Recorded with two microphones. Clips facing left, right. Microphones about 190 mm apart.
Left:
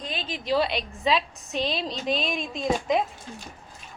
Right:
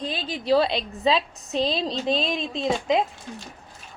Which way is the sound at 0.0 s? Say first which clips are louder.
Right 4 dB; 35° right (ahead or behind).